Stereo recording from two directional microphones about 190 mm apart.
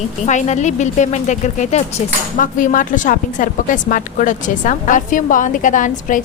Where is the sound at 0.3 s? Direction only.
40° left (ahead or behind).